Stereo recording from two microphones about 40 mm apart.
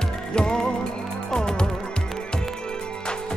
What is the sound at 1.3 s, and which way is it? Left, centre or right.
Insect, centre.